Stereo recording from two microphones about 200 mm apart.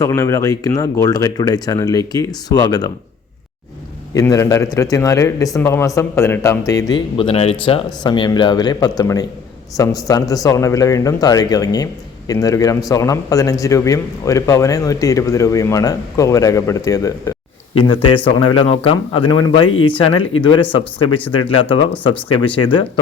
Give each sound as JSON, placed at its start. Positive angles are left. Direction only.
{"t": 0.0, "sound": "a man's voice", "side_deg": 15}
{"t": 4.1, "sound": "a man's voice", "side_deg": 15}